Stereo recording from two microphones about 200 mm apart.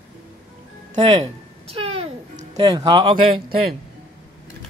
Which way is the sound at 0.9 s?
30° right (ahead or behind).